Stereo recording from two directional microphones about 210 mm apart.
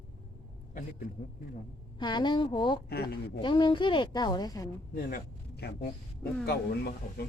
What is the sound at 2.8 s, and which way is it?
Speech, 50° left (ahead or behind).